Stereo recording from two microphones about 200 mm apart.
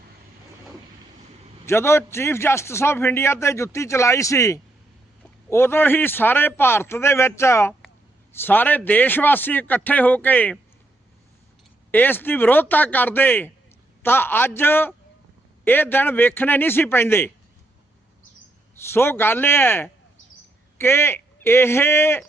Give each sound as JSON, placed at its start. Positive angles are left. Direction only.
{"t": 1.6, "sound": "a man's voice", "side_deg": 15}
{"t": 11.9, "sound": "a man's voice", "side_deg": 10}
{"t": 18.9, "sound": "a man's voice", "side_deg": 10}